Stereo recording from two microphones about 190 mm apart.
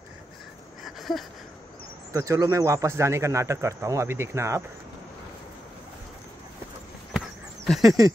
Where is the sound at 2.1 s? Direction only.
15° right (ahead or behind).